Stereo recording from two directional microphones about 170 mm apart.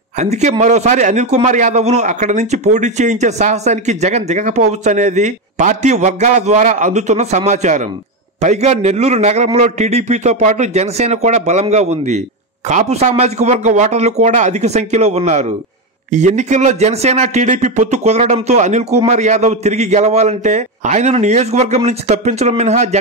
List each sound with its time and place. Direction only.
0.2 s a man's voice: 45° right (ahead or behind)